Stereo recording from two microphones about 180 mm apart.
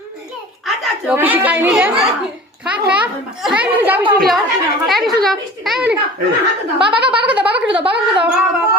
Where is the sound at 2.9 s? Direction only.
5° right (ahead or behind).